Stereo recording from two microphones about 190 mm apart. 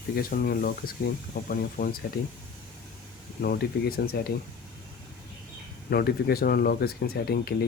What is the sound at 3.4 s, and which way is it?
Speech, 55° left (ahead or behind).